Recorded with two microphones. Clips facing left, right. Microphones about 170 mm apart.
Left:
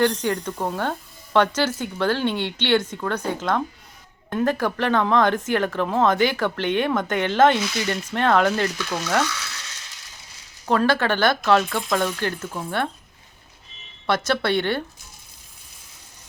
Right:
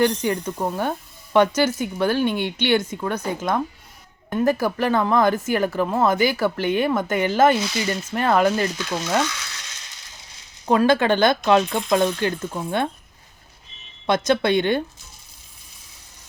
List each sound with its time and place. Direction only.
0.0 s speech: 10° right (ahead or behind)
4.3 s speech: 10° right (ahead or behind)
10.7 s speech: 15° right (ahead or behind)
14.1 s speech: 15° right (ahead or behind)